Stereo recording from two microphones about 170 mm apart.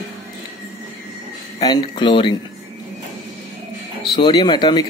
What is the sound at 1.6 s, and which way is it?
Speech, 25° left (ahead or behind).